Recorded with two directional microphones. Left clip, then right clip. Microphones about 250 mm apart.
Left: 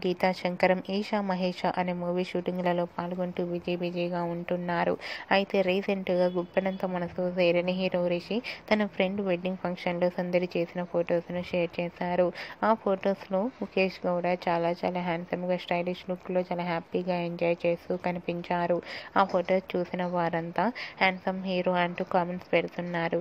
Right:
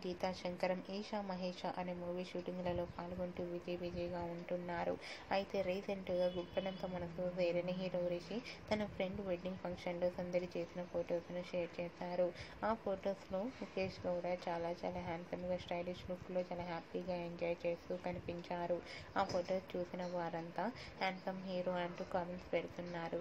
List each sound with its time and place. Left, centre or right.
0.0 s a woman's voice: left